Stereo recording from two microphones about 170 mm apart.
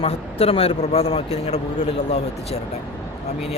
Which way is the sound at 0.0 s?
35° left (ahead or behind).